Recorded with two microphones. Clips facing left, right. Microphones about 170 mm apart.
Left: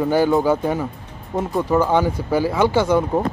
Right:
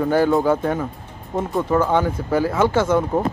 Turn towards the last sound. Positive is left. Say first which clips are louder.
# left 1 dB
turn(degrees=0)  # may be behind; listen again after turning